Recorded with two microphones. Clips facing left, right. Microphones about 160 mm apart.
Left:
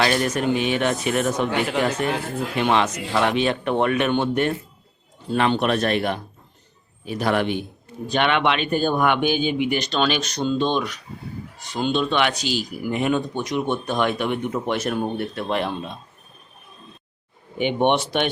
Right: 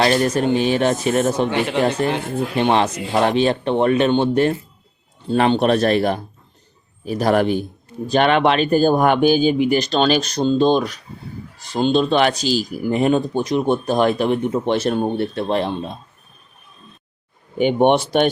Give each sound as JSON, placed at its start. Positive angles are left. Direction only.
{"t": 0.0, "sound": "speech", "side_deg": -35}
{"t": 1.5, "sound": "speech", "side_deg": 0}
{"t": 2.6, "sound": "speech", "side_deg": -30}
{"t": 17.6, "sound": "speech", "side_deg": -40}